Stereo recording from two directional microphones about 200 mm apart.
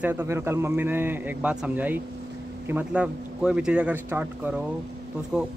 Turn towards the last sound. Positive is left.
turn(degrees=-5)  # may be behind; listen again after turning